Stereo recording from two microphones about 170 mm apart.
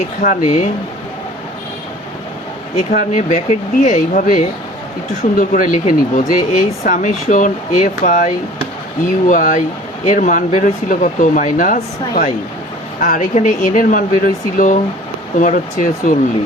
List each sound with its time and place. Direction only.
0.2 s speech: 50° left (ahead or behind)
2.9 s speech: 50° left (ahead or behind)